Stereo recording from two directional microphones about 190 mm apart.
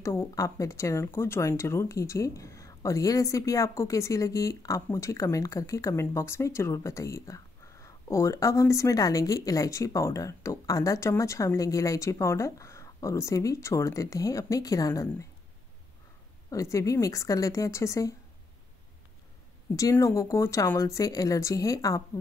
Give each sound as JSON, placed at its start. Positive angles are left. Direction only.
{"t": 0.0, "sound": "speech", "side_deg": 15}
{"t": 16.4, "sound": "speech", "side_deg": 15}
{"t": 19.7, "sound": "speech", "side_deg": 15}